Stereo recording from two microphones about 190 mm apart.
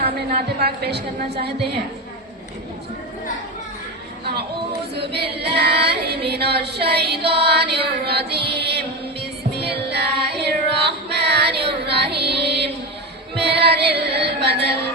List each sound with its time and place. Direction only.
0.0 s a woman's voice: 55° right (ahead or behind)
4.9 s a woman's voice: 60° right (ahead or behind)
9.6 s music: 60° right (ahead or behind)